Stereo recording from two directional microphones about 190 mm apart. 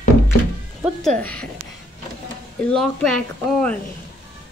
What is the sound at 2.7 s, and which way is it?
A woman's voice, 5° left (ahead or behind).